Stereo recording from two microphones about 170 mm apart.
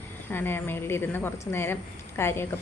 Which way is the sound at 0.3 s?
10° left (ahead or behind).